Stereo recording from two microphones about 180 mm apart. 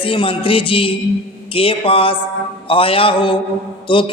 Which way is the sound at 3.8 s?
30° left (ahead or behind).